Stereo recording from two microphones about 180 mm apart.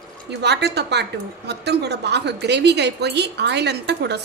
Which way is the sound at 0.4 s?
70° right (ahead or behind).